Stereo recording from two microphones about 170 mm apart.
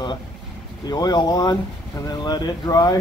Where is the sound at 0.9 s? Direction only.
25° left (ahead or behind).